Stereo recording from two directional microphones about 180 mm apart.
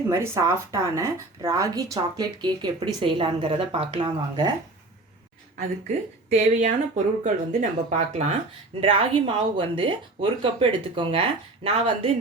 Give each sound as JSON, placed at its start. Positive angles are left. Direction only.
{"t": 0.1, "sound": "a woman's voice", "side_deg": -15}
{"t": 6.2, "sound": "speech", "side_deg": -40}